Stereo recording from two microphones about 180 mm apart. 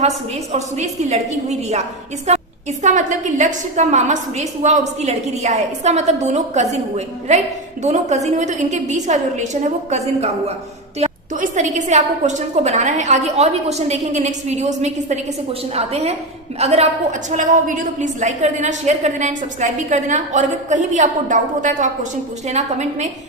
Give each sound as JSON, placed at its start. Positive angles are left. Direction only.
{"t": 0.5, "sound": "a woman's voice", "side_deg": -40}